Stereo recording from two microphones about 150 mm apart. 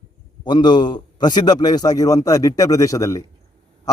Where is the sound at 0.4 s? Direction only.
30° left (ahead or behind).